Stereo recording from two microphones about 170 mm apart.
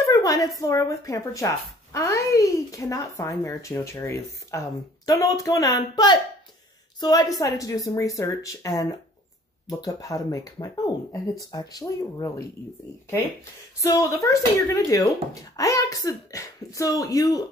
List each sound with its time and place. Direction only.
0.0 s a sound: 20° left (ahead or behind)
0.6 s a woman's voice: 20° left (ahead or behind)
13.7 s a woman's voice: 20° left (ahead or behind)